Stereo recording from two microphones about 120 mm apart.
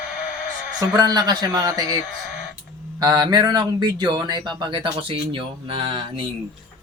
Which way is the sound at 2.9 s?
35° right (ahead or behind).